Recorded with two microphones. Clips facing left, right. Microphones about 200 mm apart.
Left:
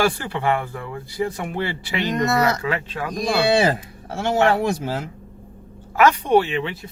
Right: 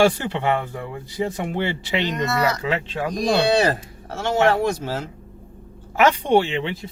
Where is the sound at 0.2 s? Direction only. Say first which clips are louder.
Even; 20° right (ahead or behind).